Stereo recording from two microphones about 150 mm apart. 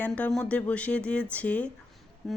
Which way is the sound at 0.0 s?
5° left (ahead or behind).